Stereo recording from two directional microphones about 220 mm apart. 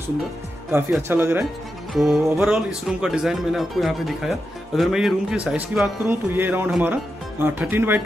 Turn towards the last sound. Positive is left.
turn(degrees=-10)  # may be behind; listen again after turning